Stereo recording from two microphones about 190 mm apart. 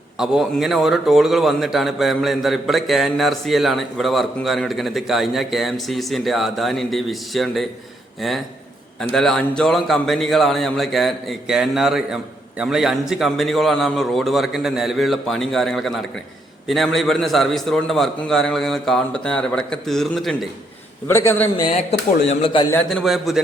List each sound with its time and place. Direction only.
0.2 s a man's voice: centre (ahead or behind)
9.0 s a man's voice: 5° left (ahead or behind)
21.1 s a man's voice: 15° left (ahead or behind)
21.7 s speech: 35° left (ahead or behind)
22.9 s a man's voice: centre (ahead or behind)